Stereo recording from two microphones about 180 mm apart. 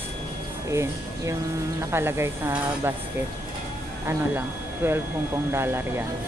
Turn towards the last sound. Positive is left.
turn(degrees=-15)  # may be behind; listen again after turning